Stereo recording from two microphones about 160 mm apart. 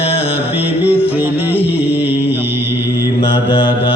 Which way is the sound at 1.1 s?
10° right (ahead or behind).